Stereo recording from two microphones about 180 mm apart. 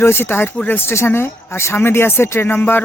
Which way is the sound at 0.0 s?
10° left (ahead or behind).